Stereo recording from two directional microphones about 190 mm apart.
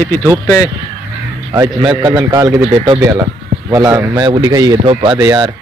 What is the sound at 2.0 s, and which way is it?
Speech, 20° right (ahead or behind).